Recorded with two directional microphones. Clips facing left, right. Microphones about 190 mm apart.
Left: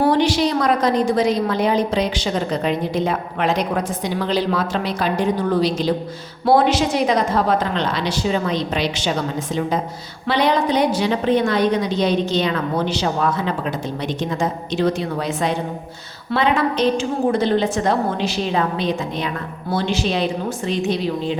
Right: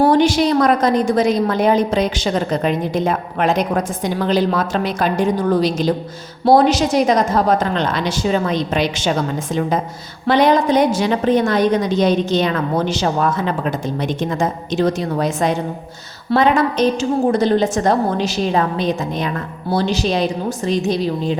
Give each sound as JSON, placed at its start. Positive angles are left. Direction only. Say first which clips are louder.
{"t": 0.1, "sound": "a woman's voice", "louder": "right 3 dB", "side_deg": -50}
{"t": 10.2, "sound": "a woman's voice", "louder": "right 4 dB", "side_deg": -45}